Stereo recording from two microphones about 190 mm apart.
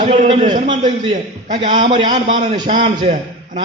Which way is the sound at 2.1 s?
40° right (ahead or behind).